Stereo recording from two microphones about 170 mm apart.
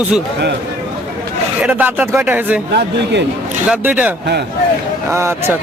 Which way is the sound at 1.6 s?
10° right (ahead or behind).